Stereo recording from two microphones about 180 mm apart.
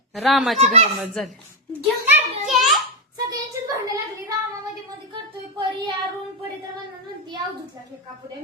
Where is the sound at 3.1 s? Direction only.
20° right (ahead or behind).